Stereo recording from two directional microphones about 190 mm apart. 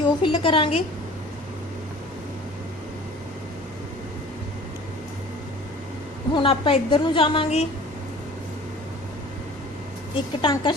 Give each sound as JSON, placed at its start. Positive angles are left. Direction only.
{"t": 0.0, "sound": "a woman's voice", "side_deg": 25}
{"t": 6.3, "sound": "a woman's voice", "side_deg": 30}
{"t": 10.4, "sound": "a woman's voice", "side_deg": 25}